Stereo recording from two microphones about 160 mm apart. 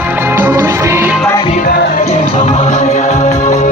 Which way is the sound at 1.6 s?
65° left (ahead or behind).